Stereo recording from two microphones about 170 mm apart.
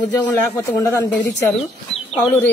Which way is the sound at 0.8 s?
15° left (ahead or behind).